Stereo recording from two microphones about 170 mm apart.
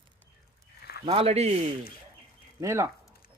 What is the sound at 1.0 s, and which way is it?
Speech, 35° right (ahead or behind).